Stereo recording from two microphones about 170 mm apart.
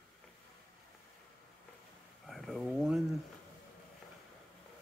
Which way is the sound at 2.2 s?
Centre (ahead or behind).